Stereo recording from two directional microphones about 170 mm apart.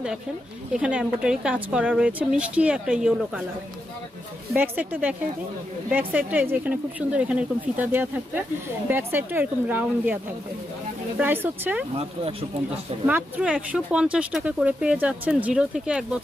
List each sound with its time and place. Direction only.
0.7 s speech: 5° right (ahead or behind)
4.6 s speech: 10° right (ahead or behind)
11.1 s speech: 10° right (ahead or behind)
12.0 s speech: 35° right (ahead or behind)
13.0 s speech: 5° right (ahead or behind)